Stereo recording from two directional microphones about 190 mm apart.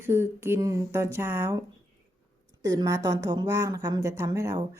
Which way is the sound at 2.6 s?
20° right (ahead or behind).